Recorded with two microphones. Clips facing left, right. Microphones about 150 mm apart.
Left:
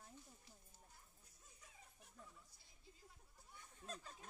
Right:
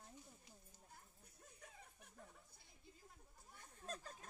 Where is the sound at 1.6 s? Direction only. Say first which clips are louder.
Right 3 dB; 55° right (ahead or behind).